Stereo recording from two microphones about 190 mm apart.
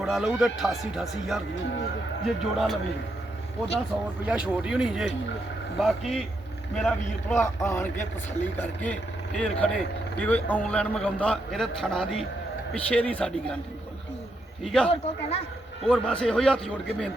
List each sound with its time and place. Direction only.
0.0 s a man's voice: centre (ahead or behind)
4.3 s a man's voice: 5° right (ahead or behind)
14.6 s speech: centre (ahead or behind)
14.8 s speech: 30° left (ahead or behind)
15.8 s a man's voice: 5° left (ahead or behind)